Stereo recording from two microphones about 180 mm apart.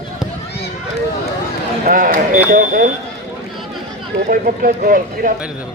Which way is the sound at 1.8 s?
50° right (ahead or behind).